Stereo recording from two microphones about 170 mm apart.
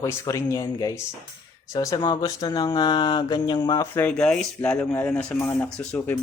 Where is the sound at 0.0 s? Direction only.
15° left (ahead or behind).